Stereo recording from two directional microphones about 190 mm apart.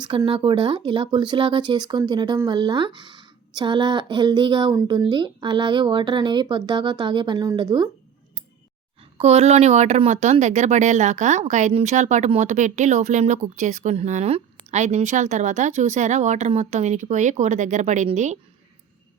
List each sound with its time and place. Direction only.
0.0 s speech: 25° right (ahead or behind)
9.1 s speech: 35° right (ahead or behind)